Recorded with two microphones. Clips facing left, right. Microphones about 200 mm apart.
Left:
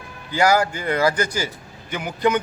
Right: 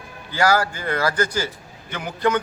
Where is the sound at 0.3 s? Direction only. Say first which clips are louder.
Left 2 dB; 15° left (ahead or behind).